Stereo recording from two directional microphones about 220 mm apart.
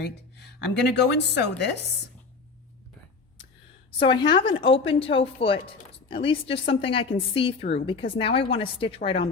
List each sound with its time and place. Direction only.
0.0 s a woman's voice: 50° left (ahead or behind)
4.0 s a woman's voice: 20° left (ahead or behind)